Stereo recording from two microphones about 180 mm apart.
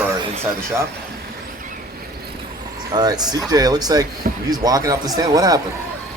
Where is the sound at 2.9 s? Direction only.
20° right (ahead or behind).